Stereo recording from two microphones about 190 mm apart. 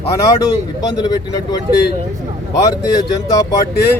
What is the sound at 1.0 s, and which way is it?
Speech, 20° left (ahead or behind).